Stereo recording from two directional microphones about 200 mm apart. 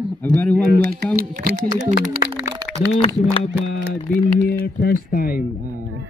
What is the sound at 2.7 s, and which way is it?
Speech, 30° left (ahead or behind).